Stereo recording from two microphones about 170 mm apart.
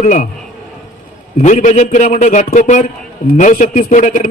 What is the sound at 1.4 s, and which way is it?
A man's voice, 45° left (ahead or behind).